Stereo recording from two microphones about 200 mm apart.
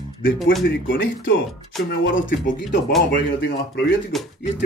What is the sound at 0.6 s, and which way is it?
Speech, 70° left (ahead or behind).